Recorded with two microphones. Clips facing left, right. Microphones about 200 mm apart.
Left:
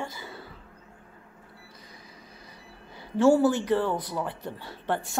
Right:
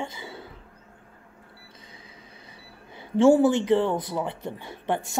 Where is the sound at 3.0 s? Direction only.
25° right (ahead or behind).